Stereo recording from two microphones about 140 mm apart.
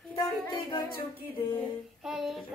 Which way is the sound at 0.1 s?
35° left (ahead or behind).